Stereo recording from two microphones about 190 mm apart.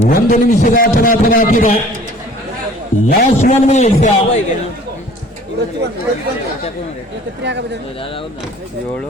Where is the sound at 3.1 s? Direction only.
45° left (ahead or behind).